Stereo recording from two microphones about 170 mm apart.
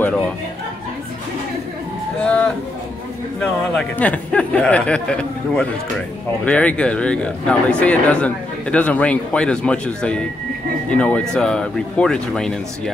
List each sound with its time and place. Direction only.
0.0 s chatter: 5° left (ahead or behind)
2.1 s speech: 5° left (ahead or behind)